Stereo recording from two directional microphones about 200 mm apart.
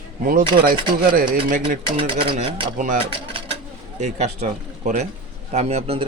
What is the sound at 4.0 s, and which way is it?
Speech, 35° right (ahead or behind).